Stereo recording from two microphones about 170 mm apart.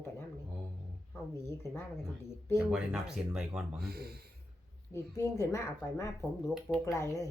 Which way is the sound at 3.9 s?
65° right (ahead or behind).